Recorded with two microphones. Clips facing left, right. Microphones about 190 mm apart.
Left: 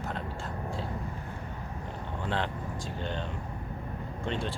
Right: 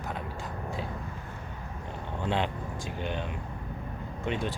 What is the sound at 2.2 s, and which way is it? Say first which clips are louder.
Speech: right 3 dB; 15° right (ahead or behind).